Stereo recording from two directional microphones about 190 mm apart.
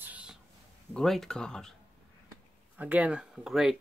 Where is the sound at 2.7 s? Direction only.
10° right (ahead or behind).